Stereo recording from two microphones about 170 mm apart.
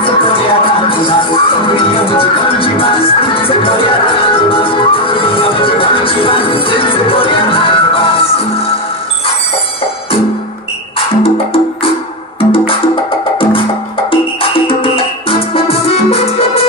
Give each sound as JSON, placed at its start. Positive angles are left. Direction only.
{"t": 0.0, "sound": "music", "side_deg": 30}
{"t": 12.4, "sound": "music", "side_deg": 35}